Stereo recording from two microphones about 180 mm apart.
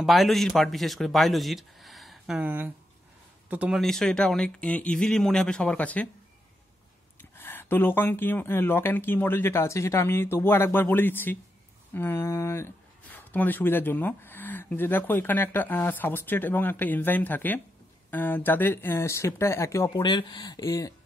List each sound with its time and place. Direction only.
0.0 s speech: centre (ahead or behind)
7.2 s speech: 10° left (ahead or behind)